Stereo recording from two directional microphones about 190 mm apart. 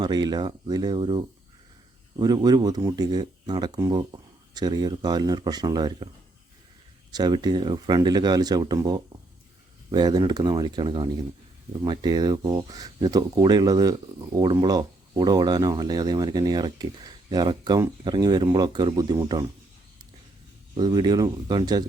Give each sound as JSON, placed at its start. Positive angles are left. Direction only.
{"t": 0.0, "sound": "speech", "side_deg": -20}
{"t": 7.1, "sound": "speech", "side_deg": -20}
{"t": 20.7, "sound": "speech", "side_deg": -20}